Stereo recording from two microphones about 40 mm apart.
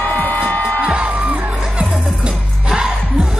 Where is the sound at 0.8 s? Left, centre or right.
Right.